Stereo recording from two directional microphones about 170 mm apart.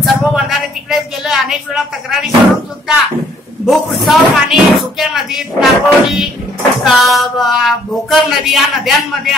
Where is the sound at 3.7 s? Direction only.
Centre (ahead or behind).